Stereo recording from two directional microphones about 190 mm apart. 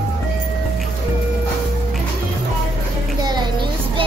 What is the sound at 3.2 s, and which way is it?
Child singing, 25° right (ahead or behind).